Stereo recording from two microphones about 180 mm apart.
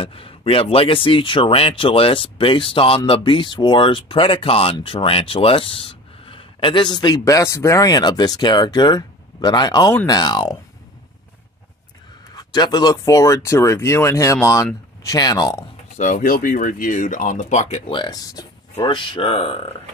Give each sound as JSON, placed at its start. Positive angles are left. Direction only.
{"t": 0.0, "sound": "speech", "side_deg": 30}
{"t": 12.4, "sound": "speech", "side_deg": 20}
{"t": 16.0, "sound": "speech", "side_deg": 45}